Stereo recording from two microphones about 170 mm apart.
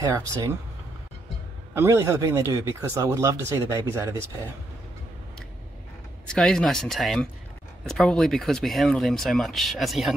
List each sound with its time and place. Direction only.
0.0 s speech: 20° right (ahead or behind)
1.7 s speech: 15° right (ahead or behind)
6.2 s speech: 5° left (ahead or behind)